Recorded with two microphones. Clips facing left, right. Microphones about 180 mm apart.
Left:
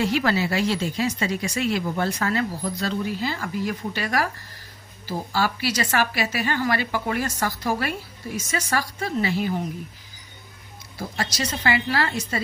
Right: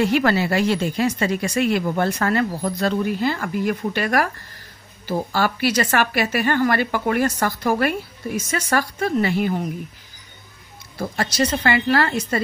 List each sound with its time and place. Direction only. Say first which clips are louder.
0.0 s a woman's voice: right 4 dB; 55° right (ahead or behind)
11.0 s a woman's voice: right 7 dB; 55° right (ahead or behind)